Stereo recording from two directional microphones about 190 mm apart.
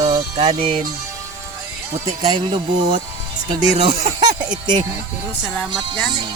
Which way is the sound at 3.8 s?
25° right (ahead or behind).